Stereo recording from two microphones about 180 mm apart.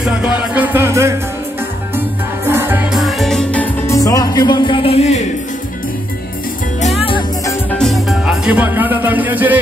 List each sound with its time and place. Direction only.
0.0 s music: 5° right (ahead or behind)
3.0 s music: centre (ahead or behind); by 5.2 s 35° left (ahead or behind)
6.8 s music: 30° left (ahead or behind)
7.7 s music: centre (ahead or behind)